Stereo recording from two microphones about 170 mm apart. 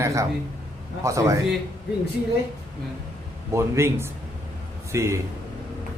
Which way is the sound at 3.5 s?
15° right (ahead or behind).